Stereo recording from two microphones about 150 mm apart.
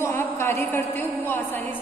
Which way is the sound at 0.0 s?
15° left (ahead or behind).